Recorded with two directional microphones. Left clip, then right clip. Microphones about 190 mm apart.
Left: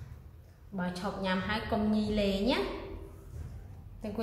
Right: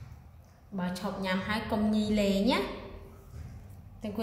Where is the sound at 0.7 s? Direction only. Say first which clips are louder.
Even; 20° right (ahead or behind).